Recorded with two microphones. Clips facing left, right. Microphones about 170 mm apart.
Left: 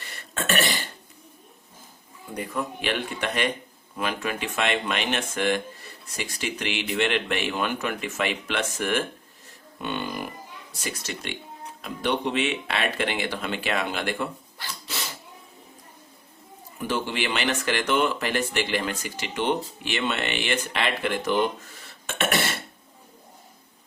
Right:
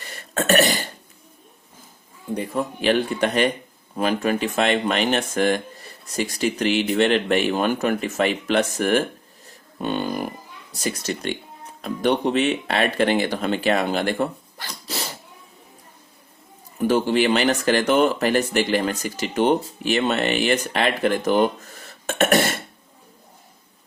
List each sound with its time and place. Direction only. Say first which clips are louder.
0.3 s throat clearing: right 7 dB; 40° right (ahead or behind)
2.3 s speech: right 5 dB; 30° right (ahead or behind)
16.7 s speech: right 9 dB; 40° right (ahead or behind)